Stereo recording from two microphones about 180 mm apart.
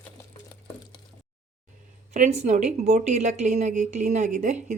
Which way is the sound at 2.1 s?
40° right (ahead or behind).